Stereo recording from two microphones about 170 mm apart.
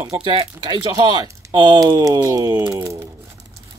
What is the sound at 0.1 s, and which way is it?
Speech, 30° right (ahead or behind).